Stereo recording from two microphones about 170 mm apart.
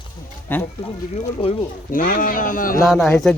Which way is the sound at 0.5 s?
10° left (ahead or behind).